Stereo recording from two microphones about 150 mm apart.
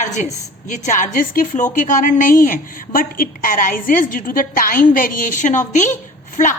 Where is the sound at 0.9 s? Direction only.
55° left (ahead or behind).